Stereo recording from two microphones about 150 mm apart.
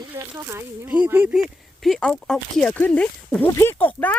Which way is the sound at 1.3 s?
Centre (ahead or behind).